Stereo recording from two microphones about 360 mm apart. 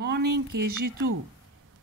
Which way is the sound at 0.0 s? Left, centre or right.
Right.